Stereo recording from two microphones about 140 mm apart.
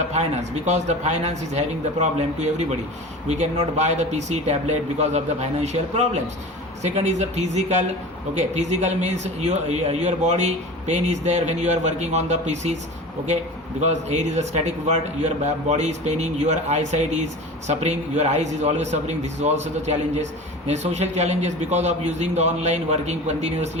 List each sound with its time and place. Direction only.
0.1 s a man's voice: 55° right (ahead or behind)
13.8 s a man's voice: 55° right (ahead or behind)
20.7 s a man's voice: 55° right (ahead or behind)